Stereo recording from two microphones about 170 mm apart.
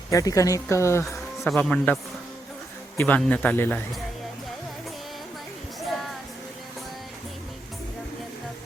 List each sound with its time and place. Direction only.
0.1 s a woman's voice: 20° left (ahead or behind)
1.0 s speech: centre (ahead or behind)
3.0 s speech: 10° left (ahead or behind)